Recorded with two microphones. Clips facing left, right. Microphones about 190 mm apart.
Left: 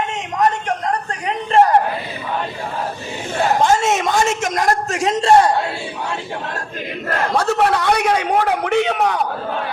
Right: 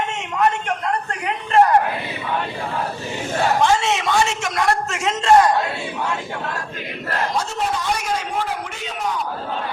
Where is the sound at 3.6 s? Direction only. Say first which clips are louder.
Left 2 dB; 45° left (ahead or behind).